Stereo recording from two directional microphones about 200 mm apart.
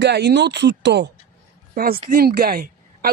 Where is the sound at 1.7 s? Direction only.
45° right (ahead or behind).